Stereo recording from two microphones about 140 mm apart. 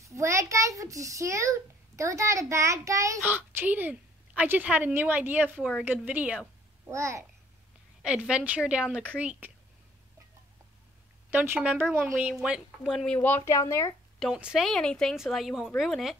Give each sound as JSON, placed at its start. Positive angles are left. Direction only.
{"t": 0.0, "sound": "a child's voice", "side_deg": -20}
{"t": 5.6, "sound": "a woman's voice", "side_deg": 0}
{"t": 5.9, "sound": "speech", "side_deg": -10}
{"t": 6.9, "sound": "a child's voice", "side_deg": -20}
{"t": 8.0, "sound": "speech", "side_deg": -5}
{"t": 11.2, "sound": "speech", "side_deg": -15}
{"t": 14.2, "sound": "a woman's voice", "side_deg": -5}